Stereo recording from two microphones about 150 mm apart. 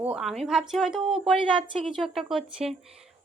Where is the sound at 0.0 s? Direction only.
5° right (ahead or behind).